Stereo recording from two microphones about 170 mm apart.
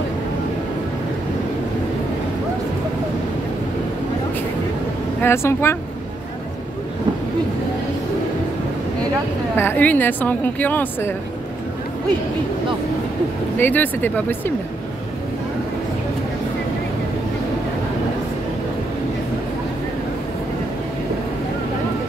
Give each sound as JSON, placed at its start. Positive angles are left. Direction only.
{"t": 5.2, "sound": "a woman's voice", "side_deg": 15}
{"t": 9.6, "sound": "a woman's voice", "side_deg": 10}
{"t": 13.6, "sound": "a woman's voice", "side_deg": 10}